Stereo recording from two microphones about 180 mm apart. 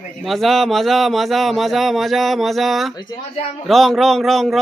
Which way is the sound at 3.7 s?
Centre (ahead or behind).